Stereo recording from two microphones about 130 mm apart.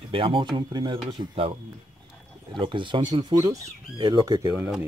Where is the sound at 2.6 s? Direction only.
40° right (ahead or behind).